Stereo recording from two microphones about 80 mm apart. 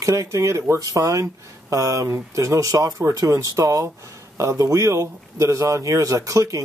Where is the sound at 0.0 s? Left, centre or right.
Right.